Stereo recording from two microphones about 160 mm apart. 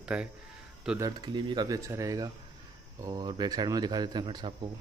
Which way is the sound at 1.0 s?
25° right (ahead or behind).